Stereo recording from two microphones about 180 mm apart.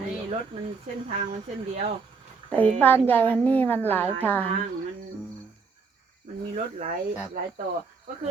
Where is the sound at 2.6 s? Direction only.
10° left (ahead or behind).